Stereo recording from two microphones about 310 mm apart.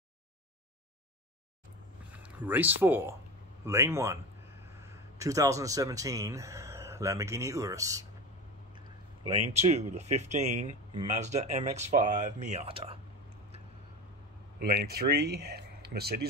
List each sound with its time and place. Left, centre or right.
2.1 s speech: centre
9.3 s speech: right
14.6 s speech: right